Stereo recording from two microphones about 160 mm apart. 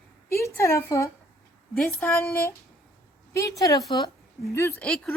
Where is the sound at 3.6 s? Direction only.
20° left (ahead or behind).